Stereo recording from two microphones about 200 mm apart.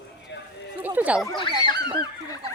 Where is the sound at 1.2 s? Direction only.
20° left (ahead or behind).